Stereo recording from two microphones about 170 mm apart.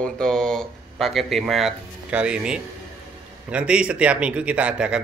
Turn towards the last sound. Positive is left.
turn(degrees=-5)  # may be behind; listen again after turning